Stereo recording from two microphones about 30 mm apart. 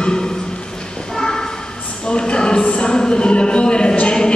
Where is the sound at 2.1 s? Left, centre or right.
Left.